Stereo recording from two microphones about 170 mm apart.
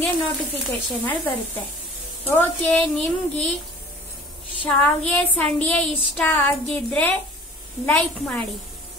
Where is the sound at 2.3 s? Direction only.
10° left (ahead or behind).